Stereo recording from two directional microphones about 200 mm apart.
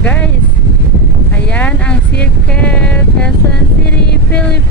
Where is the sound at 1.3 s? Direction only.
5° left (ahead or behind).